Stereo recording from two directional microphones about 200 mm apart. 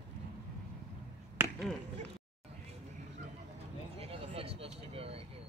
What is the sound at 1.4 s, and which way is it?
Chop, 10° right (ahead or behind).